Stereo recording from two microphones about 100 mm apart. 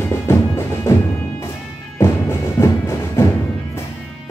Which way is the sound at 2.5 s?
30° left (ahead or behind).